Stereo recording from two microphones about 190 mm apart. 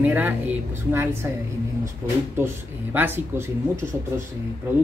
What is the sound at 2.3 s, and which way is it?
Speech, 10° right (ahead or behind).